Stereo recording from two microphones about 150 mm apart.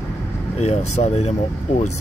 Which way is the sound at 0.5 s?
45° left (ahead or behind).